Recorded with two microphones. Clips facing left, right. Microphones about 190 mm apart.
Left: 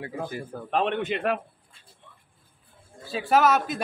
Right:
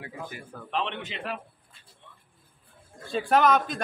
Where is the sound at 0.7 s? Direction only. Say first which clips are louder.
Left 7 dB; 50° left (ahead or behind).